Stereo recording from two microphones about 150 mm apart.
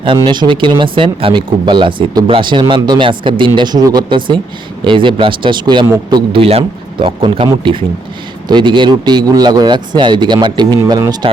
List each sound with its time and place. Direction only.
0.2 s a man's voice: 30° right (ahead or behind)